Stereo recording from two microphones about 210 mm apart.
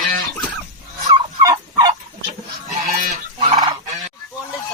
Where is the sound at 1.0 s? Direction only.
15° right (ahead or behind).